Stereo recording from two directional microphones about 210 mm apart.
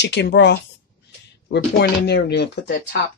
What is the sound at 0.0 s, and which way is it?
A woman's voice, 55° left (ahead or behind).